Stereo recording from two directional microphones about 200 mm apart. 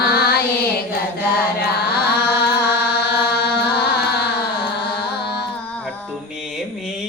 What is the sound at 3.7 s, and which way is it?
Music, 55° left (ahead or behind).